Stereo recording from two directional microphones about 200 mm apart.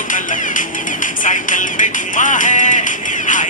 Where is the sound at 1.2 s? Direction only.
40° left (ahead or behind).